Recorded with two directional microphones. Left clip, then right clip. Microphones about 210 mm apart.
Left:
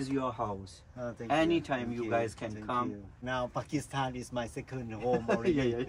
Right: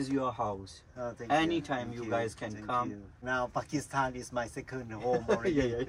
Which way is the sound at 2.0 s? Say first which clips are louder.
Left 2 dB; centre (ahead or behind).